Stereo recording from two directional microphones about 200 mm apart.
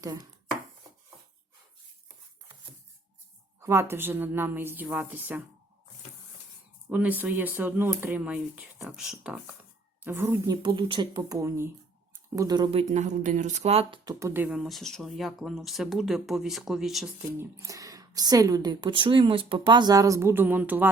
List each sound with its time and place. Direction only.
0.0 s speech: 15° right (ahead or behind)
3.6 s speech: 15° right (ahead or behind)
6.9 s speech: 10° right (ahead or behind)
12.9 s speech: 35° right (ahead or behind); by 17.4 s centre (ahead or behind)
17.4 s speech: 15° right (ahead or behind)